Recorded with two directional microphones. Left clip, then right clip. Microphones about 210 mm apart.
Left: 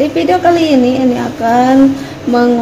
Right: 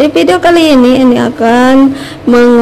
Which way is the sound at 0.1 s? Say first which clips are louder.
Right 3 dB; 40° right (ahead or behind).